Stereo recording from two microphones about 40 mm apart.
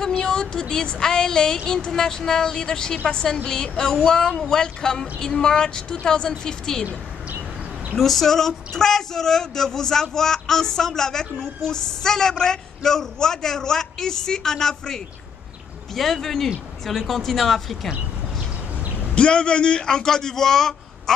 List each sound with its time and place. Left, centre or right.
0.2 s a woman's voice: centre
7.9 s a woman's voice: centre
19.1 s a woman's voice: left